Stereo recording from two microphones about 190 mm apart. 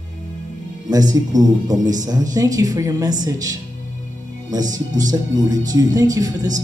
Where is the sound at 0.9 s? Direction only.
20° right (ahead or behind).